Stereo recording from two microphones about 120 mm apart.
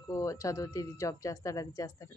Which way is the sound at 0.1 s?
25° left (ahead or behind).